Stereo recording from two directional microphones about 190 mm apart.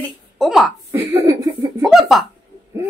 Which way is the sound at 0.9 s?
15° right (ahead or behind).